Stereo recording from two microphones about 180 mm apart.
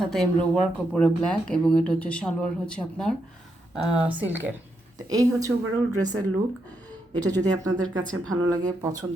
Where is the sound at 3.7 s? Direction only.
5° right (ahead or behind).